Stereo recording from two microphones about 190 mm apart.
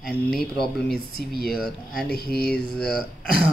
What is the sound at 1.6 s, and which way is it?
Speech, 5° left (ahead or behind).